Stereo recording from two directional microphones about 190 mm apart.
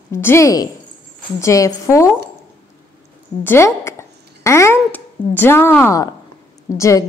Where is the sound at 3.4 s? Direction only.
15° left (ahead or behind).